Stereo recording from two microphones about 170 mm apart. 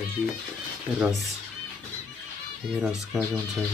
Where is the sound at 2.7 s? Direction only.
Centre (ahead or behind).